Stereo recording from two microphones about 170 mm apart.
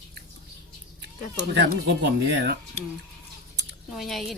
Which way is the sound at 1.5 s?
80° right.